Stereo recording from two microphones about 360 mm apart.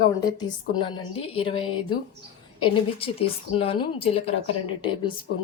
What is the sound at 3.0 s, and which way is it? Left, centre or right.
A woman's voice, centre.